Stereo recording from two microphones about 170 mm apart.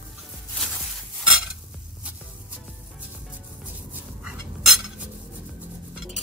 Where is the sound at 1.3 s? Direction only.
5° right (ahead or behind).